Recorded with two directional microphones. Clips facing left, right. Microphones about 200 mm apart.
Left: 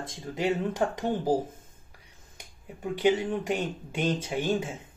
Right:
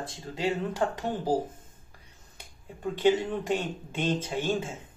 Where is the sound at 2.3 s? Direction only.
15° left (ahead or behind).